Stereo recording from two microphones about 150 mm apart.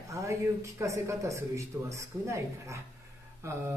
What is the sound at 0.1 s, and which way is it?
Speech, 20° right (ahead or behind).